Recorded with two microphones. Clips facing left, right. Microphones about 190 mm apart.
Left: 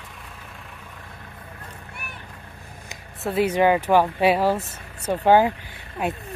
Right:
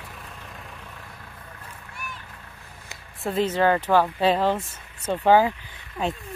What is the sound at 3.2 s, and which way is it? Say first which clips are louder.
Speech: left 2 dB; 10° left (ahead or behind).